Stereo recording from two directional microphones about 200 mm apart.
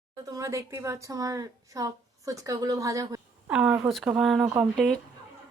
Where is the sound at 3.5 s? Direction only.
5° right (ahead or behind).